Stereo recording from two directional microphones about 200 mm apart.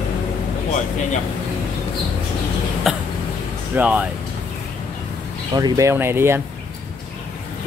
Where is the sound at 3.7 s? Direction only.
5° right (ahead or behind).